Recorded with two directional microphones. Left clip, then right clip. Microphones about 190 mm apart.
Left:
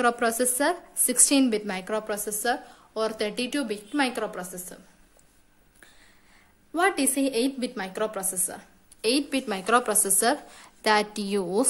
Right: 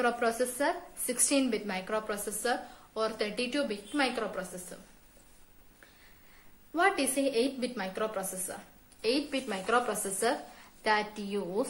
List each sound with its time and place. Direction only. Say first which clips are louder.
0.0 s a woman's voice: left 5 dB; 55° left (ahead or behind)
6.7 s a woman's voice: left 3 dB; 55° left (ahead or behind)